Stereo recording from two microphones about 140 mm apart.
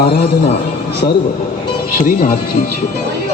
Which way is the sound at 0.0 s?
90° left.